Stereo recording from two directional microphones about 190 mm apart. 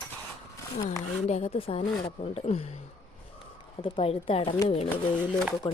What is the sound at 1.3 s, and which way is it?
A woman's voice, 35° left (ahead or behind).